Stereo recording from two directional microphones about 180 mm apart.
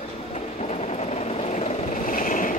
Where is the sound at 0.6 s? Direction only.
35° left (ahead or behind).